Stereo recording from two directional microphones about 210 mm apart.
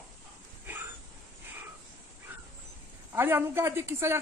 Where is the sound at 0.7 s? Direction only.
10° right (ahead or behind).